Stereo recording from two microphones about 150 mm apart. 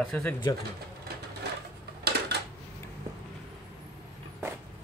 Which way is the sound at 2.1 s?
90° right.